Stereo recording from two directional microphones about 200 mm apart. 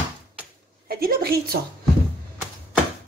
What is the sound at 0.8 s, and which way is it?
Speech, 50° right (ahead or behind).